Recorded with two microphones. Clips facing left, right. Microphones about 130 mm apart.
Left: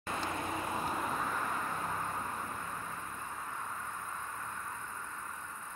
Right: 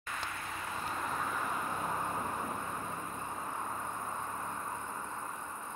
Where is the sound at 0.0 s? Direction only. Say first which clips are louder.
Left 5 dB; 30° left (ahead or behind); by 2.9 s 25° right (ahead or behind).